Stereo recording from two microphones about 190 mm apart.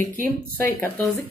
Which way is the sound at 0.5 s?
10° left (ahead or behind).